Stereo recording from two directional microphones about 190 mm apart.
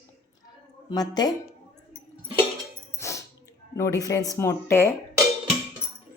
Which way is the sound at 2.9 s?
15° left (ahead or behind).